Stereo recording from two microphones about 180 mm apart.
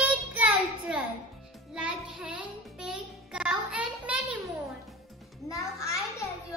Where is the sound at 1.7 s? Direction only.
5° right (ahead or behind).